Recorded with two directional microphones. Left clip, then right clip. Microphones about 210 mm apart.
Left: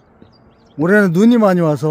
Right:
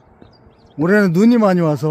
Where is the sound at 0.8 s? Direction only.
10° left (ahead or behind).